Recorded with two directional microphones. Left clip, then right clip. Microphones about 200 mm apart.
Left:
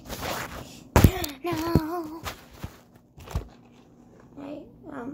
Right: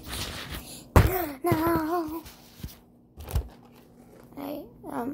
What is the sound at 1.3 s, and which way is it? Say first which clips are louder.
Child singing: right 2 dB; 25° right (ahead or behind).